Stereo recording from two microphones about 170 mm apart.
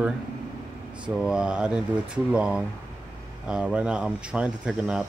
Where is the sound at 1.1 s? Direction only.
5° right (ahead or behind).